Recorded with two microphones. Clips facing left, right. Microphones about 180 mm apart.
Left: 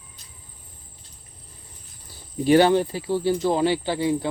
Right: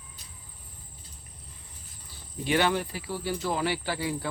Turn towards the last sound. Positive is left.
turn(degrees=25)  # may be behind; listen again after turning